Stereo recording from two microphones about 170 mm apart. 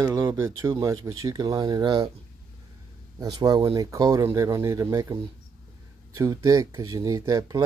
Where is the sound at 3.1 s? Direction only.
25° right (ahead or behind).